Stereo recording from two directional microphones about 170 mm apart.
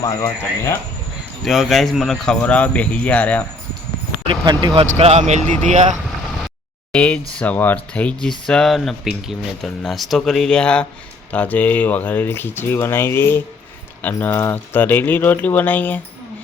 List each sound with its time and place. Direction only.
0.0 s speech: 20° left (ahead or behind)
1.5 s speech: centre (ahead or behind)
4.3 s speech: 30° right (ahead or behind)
6.9 s speech: 5° left (ahead or behind)